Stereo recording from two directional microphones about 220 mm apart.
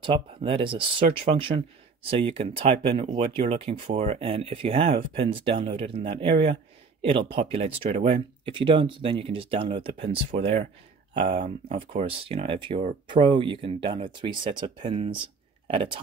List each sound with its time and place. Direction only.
0.0 s speech: 25° right (ahead or behind)